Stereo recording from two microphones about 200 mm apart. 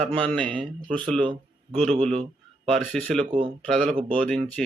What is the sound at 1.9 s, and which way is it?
Speech, 35° right (ahead or behind).